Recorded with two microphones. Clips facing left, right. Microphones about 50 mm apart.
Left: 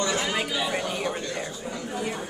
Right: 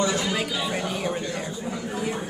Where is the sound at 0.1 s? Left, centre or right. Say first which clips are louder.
Right 1 dB; centre.